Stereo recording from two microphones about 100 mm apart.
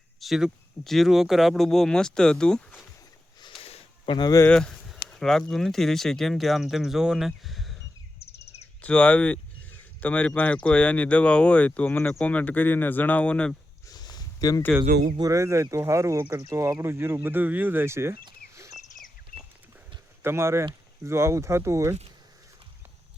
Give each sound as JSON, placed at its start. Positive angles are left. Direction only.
{"t": 0.2, "sound": "speech", "side_deg": -5}
{"t": 3.6, "sound": "a sound", "side_deg": 75}
{"t": 4.2, "sound": "speech", "side_deg": 35}
{"t": 4.4, "sound": "speech", "side_deg": 10}
{"t": 8.2, "sound": "a sound", "side_deg": 90}
{"t": 8.8, "sound": "speech", "side_deg": 15}
{"t": 13.8, "sound": "a sound", "side_deg": 45}
{"t": 15.2, "sound": "speech", "side_deg": -30}
{"t": 20.2, "sound": "speech", "side_deg": -25}